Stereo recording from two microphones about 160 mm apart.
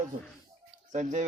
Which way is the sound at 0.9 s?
50° right (ahead or behind).